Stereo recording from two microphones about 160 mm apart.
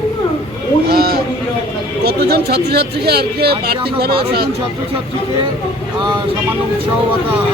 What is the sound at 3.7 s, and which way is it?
Speech, 80° right.